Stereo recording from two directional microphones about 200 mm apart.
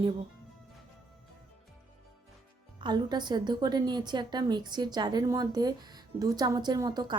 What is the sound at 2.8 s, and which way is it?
Speech, 20° right (ahead or behind).